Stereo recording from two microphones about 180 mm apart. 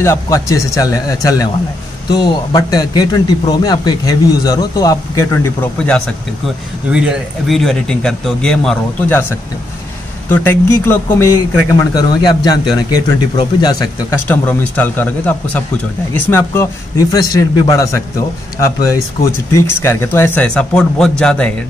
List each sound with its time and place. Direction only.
0.0 s a man's voice: 15° left (ahead or behind)
10.2 s a man's voice: 10° left (ahead or behind)